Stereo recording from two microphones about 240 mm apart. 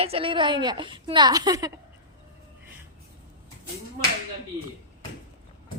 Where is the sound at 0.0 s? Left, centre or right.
Right.